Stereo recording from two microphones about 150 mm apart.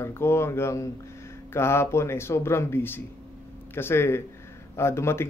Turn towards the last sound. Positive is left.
turn(degrees=15)  # may be behind; listen again after turning